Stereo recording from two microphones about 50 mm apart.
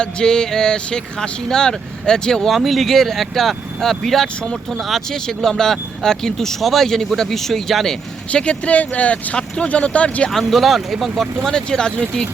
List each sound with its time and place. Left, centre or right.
0.0 s speech: centre
2.5 s speech: centre
5.1 s speech: centre
8.3 s speech: left
10.2 s speech: centre
11.5 s speech: centre